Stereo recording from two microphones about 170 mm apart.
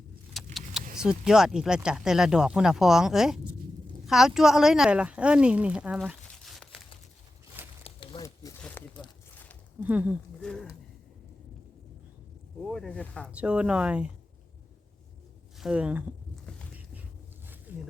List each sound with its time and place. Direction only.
0.3 s vehicle: centre (ahead or behind)
0.9 s speech: 5° right (ahead or behind)
7.9 s a sound: 30° left (ahead or behind)
9.8 s speech: 10° right (ahead or behind)
10.4 s speech: 5° left (ahead or behind)
12.6 s speech: centre (ahead or behind)
13.3 s speech: 5° right (ahead or behind)
15.5 s speech: 5° right (ahead or behind)
17.7 s roaring cats: 10° right (ahead or behind)